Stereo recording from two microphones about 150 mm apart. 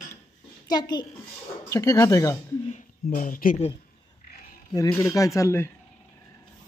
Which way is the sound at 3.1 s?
65° left (ahead or behind).